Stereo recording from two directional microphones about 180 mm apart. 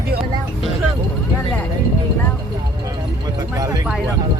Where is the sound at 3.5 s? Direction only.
20° right (ahead or behind).